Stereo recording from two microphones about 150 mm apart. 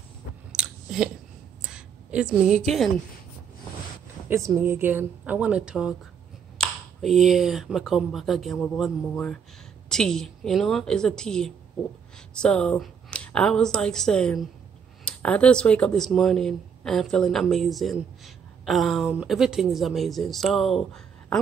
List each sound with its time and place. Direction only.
0.5 s chewing: 5° right (ahead or behind)
1.6 s a sound: 5° right (ahead or behind)
4.3 s a woman's voice: 15° right (ahead or behind); by 21.4 s 5° left (ahead or behind)